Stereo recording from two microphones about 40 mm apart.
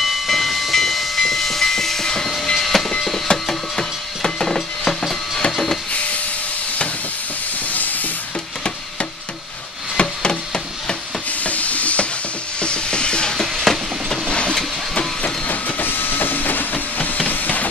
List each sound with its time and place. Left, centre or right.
0.0 s hiss: centre
2.5 s steam: centre
3.3 s wood: centre
7.7 s rub: left
9.9 s a sound: left
11.4 s stir: left
12.5 s a sound: left
13.7 s train: centre
15.4 s vehicle: left
17.3 s music: left